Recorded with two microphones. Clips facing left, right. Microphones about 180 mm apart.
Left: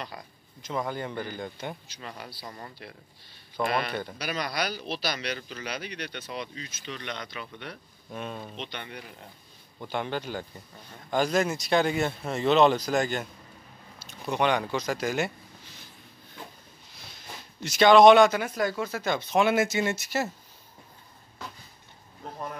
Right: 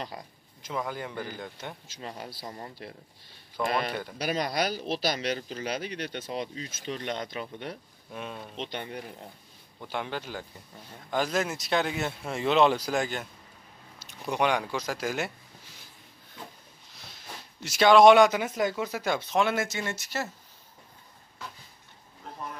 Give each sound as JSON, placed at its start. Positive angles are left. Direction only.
{"t": 0.6, "sound": "speech", "side_deg": -5}
{"t": 2.0, "sound": "speech", "side_deg": -30}
{"t": 4.2, "sound": "speech", "side_deg": -45}
{"t": 8.1, "sound": "speech", "side_deg": 0}
{"t": 8.5, "sound": "speech", "side_deg": -40}
{"t": 9.8, "sound": "speech", "side_deg": 0}
{"t": 14.3, "sound": "speech", "side_deg": -10}
{"t": 16.9, "sound": "speech", "side_deg": 0}
{"t": 19.3, "sound": "speech", "side_deg": 5}